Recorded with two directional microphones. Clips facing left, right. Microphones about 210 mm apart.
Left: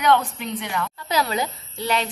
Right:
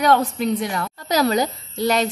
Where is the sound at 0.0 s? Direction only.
40° right (ahead or behind).